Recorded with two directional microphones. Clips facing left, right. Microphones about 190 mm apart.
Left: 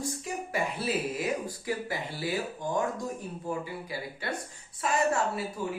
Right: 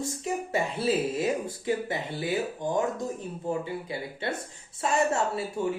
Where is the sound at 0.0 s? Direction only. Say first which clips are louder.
Right 4 dB; 25° right (ahead or behind).